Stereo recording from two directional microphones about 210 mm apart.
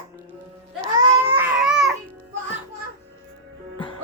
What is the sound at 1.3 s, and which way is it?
Baby cry, 10° right (ahead or behind).